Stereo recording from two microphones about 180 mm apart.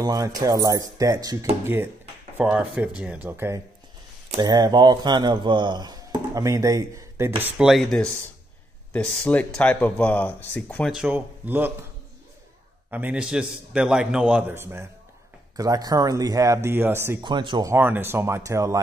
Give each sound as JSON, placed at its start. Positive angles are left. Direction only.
{"t": 0.0, "sound": "speech", "side_deg": -20}
{"t": 2.3, "sound": "a man's voice", "side_deg": -5}
{"t": 7.4, "sound": "speech", "side_deg": -5}
{"t": 10.9, "sound": "a man's voice", "side_deg": -5}
{"t": 12.9, "sound": "a man's voice", "side_deg": -10}
{"t": 17.2, "sound": "a man's voice", "side_deg": -25}